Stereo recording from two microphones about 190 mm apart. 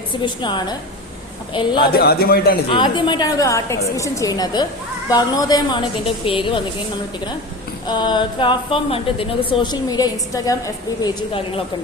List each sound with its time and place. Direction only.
0.2 s a woman's voice: 25° left (ahead or behind)
2.0 s a man's voice: 55° left (ahead or behind)
2.6 s a woman's voice: 25° left (ahead or behind)
7.9 s a woman's voice: 25° left (ahead or behind)
11.0 s a woman's voice: 30° left (ahead or behind)